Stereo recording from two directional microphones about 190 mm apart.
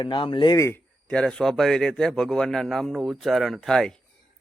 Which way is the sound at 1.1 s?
5° left (ahead or behind).